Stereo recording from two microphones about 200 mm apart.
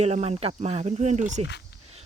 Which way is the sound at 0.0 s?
30° right (ahead or behind).